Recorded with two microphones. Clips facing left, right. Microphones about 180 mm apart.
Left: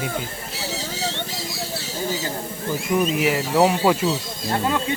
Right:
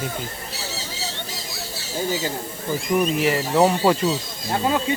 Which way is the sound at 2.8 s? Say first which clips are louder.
Even; 5° left (ahead or behind).